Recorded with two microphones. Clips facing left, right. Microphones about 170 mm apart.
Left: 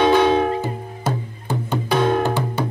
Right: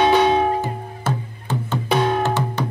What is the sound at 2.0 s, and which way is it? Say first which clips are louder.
Music: left 2 dB; 50° left (ahead or behind).